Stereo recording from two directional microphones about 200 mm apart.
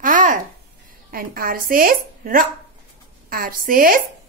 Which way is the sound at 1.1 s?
45° right (ahead or behind).